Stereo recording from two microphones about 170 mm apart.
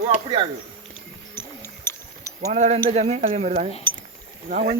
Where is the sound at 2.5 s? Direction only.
40° right (ahead or behind).